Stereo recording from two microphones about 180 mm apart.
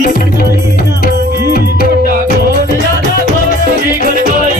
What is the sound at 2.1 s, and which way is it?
Music, 50° right (ahead or behind).